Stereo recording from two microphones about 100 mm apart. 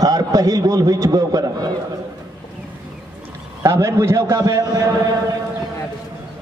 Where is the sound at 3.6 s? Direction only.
30° right (ahead or behind).